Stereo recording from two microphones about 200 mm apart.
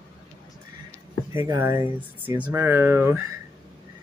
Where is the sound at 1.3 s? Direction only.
15° right (ahead or behind).